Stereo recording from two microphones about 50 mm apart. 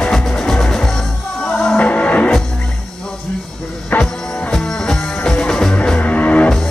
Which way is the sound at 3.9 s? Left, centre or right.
Left.